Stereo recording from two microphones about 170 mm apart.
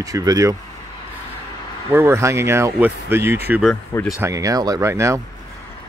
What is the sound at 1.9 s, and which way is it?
Speech, 15° right (ahead or behind).